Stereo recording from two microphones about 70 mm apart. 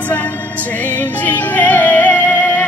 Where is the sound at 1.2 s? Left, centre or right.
Left.